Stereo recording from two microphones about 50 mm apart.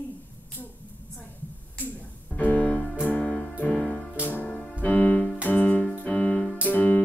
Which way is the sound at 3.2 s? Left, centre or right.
Centre.